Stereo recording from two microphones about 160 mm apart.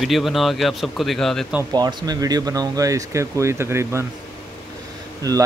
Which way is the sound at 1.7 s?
25° right (ahead or behind).